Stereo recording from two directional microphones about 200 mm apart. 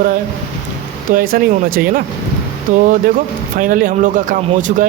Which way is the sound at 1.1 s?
45° right (ahead or behind).